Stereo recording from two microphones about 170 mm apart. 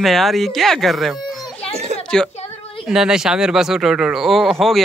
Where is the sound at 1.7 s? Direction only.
40° right (ahead or behind).